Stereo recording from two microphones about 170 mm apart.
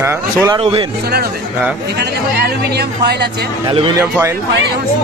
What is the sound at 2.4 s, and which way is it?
Speech, 70° right (ahead or behind).